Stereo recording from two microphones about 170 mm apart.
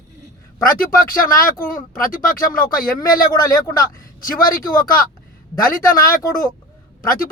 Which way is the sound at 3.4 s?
20° left (ahead or behind).